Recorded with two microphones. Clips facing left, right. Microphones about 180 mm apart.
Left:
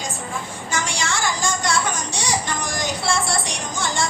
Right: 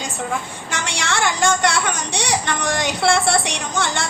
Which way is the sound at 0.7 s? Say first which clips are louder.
Right 1 dB; 65° right (ahead or behind).